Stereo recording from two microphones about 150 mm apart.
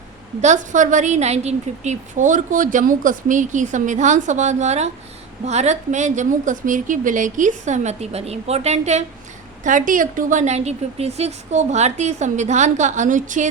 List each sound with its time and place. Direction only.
0.4 s a woman's voice: 55° right (ahead or behind)
9.6 s a woman's voice: 60° right (ahead or behind)